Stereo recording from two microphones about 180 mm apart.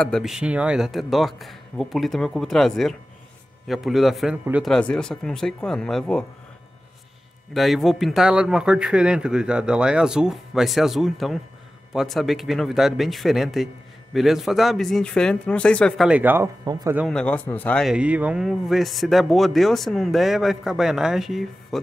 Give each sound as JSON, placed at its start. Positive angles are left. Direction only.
{"t": 0.0, "sound": "speech", "side_deg": 0}
{"t": 7.5, "sound": "speech", "side_deg": 0}
{"t": 16.1, "sound": "speech", "side_deg": -10}
{"t": 16.7, "sound": "speech", "side_deg": -20}
{"t": 17.1, "sound": "speech", "side_deg": 5}
{"t": 17.9, "sound": "speech", "side_deg": -10}